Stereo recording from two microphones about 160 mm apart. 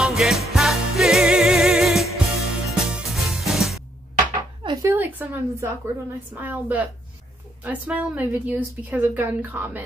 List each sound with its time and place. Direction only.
0.0 s music: centre (ahead or behind)
4.8 s a sound: 10° right (ahead or behind)
6.3 s a woman's voice: 10° right (ahead or behind)